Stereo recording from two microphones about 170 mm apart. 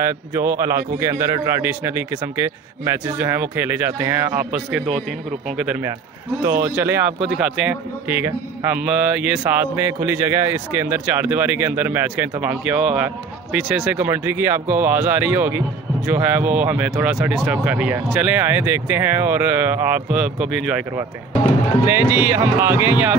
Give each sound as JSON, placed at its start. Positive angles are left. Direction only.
{"t": 0.0, "sound": "a man's voice", "side_deg": -15}
{"t": 6.4, "sound": "a man's voice", "side_deg": -15}
{"t": 21.8, "sound": "a man's voice", "side_deg": -10}